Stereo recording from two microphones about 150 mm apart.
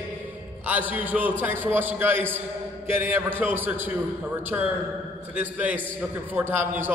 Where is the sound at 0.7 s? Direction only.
10° right (ahead or behind).